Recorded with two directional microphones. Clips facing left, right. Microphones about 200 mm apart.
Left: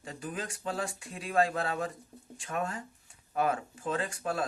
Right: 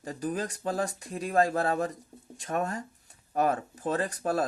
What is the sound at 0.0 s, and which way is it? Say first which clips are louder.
Speech: right 6 dB; 40° right (ahead or behind).